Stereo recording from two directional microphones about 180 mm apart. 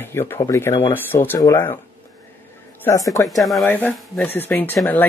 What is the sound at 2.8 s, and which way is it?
Speech, 20° left (ahead or behind).